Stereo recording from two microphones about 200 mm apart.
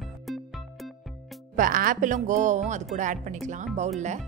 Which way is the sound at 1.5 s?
45° right (ahead or behind).